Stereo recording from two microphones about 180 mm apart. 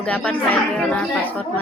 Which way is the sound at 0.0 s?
5° left (ahead or behind).